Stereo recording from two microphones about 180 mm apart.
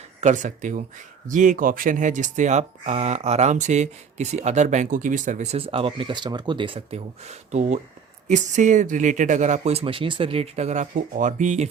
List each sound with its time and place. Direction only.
0.2 s speech: 45° right (ahead or behind)